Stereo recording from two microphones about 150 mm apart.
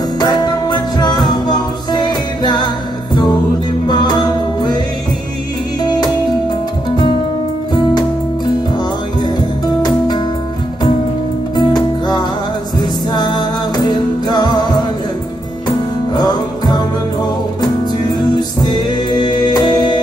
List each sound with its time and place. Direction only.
0.2 s music: 25° left (ahead or behind)
3.8 s music: 30° left (ahead or behind)
5.8 s music: 25° left (ahead or behind)
9.8 s music: 30° left (ahead or behind)
11.5 s music: 30° left (ahead or behind)
16.2 s music: 25° left (ahead or behind)
18.3 s music: 30° left (ahead or behind)